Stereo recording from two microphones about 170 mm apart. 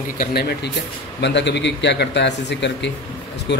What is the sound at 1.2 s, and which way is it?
A man's voice, 90° left.